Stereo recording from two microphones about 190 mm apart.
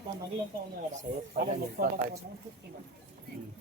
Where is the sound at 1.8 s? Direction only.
50° right (ahead or behind).